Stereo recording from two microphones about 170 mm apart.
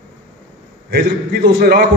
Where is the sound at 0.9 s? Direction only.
70° right (ahead or behind).